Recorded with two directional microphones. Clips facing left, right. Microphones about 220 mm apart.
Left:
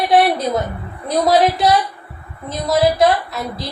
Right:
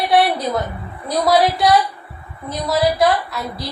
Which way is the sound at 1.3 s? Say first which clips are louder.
Even; 20° left (ahead or behind).